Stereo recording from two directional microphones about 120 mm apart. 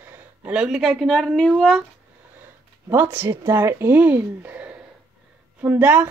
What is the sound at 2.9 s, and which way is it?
A woman's voice, 20° right (ahead or behind).